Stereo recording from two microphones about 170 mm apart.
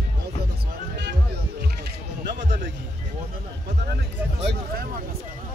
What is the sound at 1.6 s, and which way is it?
Music, 70° right (ahead or behind).